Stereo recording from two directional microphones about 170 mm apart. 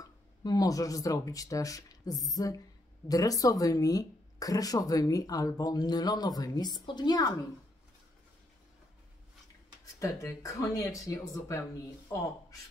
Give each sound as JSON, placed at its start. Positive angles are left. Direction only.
{"t": 0.0, "sound": "speech", "side_deg": 20}
{"t": 9.9, "sound": "speech", "side_deg": 20}